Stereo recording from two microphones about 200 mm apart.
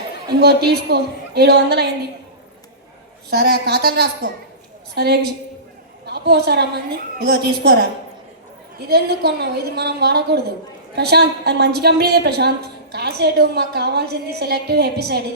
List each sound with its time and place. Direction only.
0.3 s a woman's voice: 55° right (ahead or behind)
3.2 s a woman's voice: 55° right (ahead or behind)
8.9 s a woman's voice: 55° right (ahead or behind)